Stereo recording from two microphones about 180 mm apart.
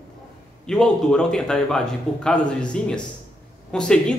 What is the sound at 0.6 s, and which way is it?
A man's voice, 5° left (ahead or behind).